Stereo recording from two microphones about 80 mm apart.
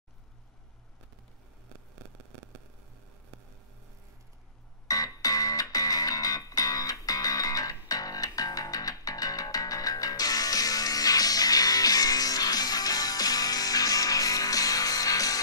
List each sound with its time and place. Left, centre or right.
4.8 s music: left